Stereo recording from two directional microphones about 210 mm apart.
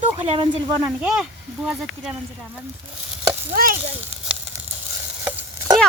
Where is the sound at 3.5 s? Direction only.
40° right (ahead or behind).